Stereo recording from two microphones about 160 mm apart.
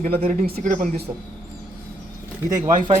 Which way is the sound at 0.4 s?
75° right (ahead or behind).